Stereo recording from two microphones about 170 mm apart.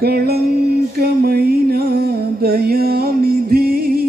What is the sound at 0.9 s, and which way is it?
Music, 65° right (ahead or behind).